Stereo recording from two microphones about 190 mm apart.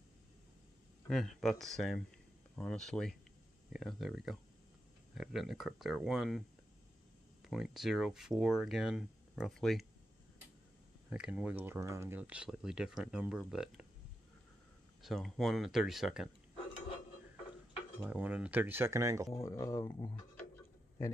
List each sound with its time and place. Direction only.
1.0 s speech: centre (ahead or behind)
7.4 s speech: centre (ahead or behind)
11.1 s speech: 5° right (ahead or behind)
15.0 s speech: centre (ahead or behind)
18.1 s speech: 10° right (ahead or behind)
19.4 s speech: 15° left (ahead or behind)